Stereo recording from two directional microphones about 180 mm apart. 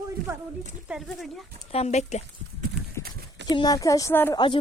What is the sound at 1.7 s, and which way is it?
Speech, 35° left (ahead or behind).